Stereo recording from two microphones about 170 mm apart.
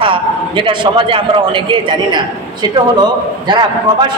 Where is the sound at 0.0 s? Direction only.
30° right (ahead or behind).